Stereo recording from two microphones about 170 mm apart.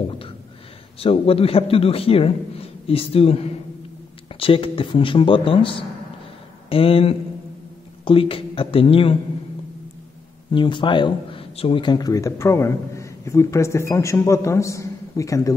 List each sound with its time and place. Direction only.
0.9 s a man's voice: 35° left (ahead or behind)
10.5 s speech: 30° left (ahead or behind)